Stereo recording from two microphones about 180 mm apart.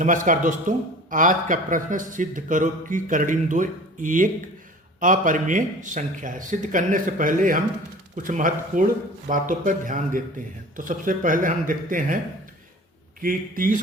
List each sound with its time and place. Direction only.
0.0 s speech: 45° right (ahead or behind)
13.2 s speech: 50° right (ahead or behind)